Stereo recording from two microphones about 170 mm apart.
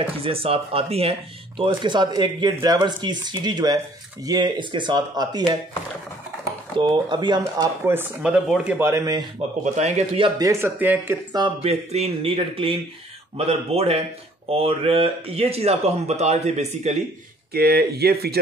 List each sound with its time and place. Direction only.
0.0 s speech: 35° right (ahead or behind)
6.8 s speech: 25° right (ahead or behind)
9.6 s speech: 40° right (ahead or behind)
10.4 s speech: 15° right (ahead or behind)
11.3 s speech: 30° right (ahead or behind)
17.5 s speech: 65° right (ahead or behind)